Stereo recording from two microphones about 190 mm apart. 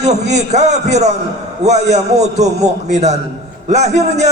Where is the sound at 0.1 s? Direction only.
35° right (ahead or behind).